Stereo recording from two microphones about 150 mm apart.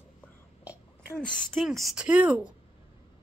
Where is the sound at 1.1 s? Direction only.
5° left (ahead or behind); by 2.5 s 10° right (ahead or behind).